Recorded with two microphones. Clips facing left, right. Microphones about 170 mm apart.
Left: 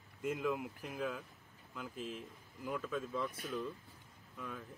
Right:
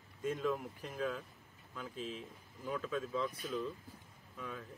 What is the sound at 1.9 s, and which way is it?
Speech, 55° left (ahead or behind).